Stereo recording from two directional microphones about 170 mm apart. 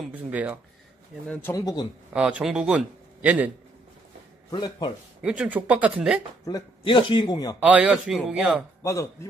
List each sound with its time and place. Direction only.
0.3 s a man's voice: 10° right (ahead or behind)
1.3 s a man's voice: 15° left (ahead or behind)
2.1 s a man's voice: 5° right (ahead or behind)
4.5 s a man's voice: 25° left (ahead or behind)
5.2 s a man's voice: 10° right (ahead or behind)
6.4 s a man's voice: 25° left (ahead or behind)
7.6 s a man's voice: 10° right (ahead or behind)
8.8 s a man's voice: 20° left (ahead or behind)